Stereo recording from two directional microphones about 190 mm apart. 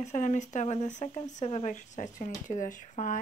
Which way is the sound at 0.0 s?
40° left (ahead or behind).